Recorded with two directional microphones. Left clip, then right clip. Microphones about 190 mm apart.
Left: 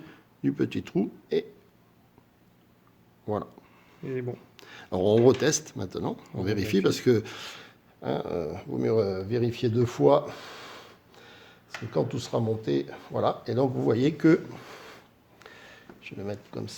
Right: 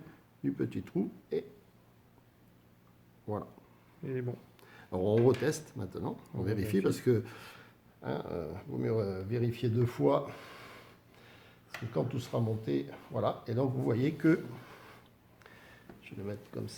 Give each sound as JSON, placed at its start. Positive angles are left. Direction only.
{"t": 0.1, "sound": "speech", "side_deg": 40}
{"t": 4.0, "sound": "speech", "side_deg": 10}
{"t": 4.5, "sound": "speech", "side_deg": 40}